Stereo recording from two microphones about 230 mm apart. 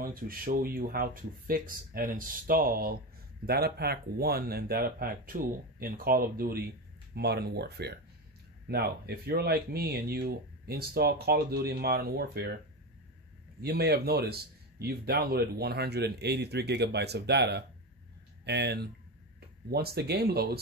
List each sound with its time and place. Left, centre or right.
0.0 s a man's voice: right
13.6 s a man's voice: right